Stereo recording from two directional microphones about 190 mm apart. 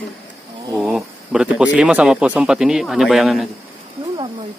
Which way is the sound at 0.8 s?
Centre (ahead or behind).